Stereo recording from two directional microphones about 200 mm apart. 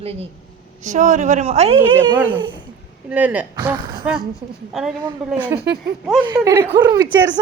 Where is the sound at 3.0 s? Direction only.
10° right (ahead or behind).